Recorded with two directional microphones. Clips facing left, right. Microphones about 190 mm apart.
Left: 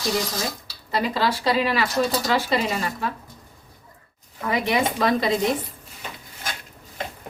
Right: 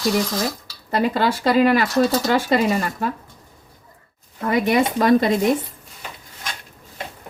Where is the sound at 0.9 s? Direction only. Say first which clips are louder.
Right 4 dB; 50° right (ahead or behind).